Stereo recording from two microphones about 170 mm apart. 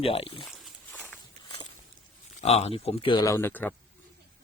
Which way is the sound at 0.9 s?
10° left (ahead or behind).